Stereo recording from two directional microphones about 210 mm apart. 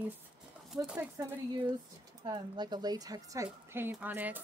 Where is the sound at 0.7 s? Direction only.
5° right (ahead or behind).